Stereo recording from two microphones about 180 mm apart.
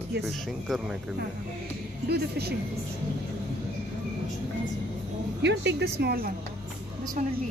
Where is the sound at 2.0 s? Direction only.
65° right (ahead or behind).